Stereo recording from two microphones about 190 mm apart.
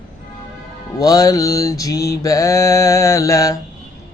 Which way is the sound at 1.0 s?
20° left (ahead or behind).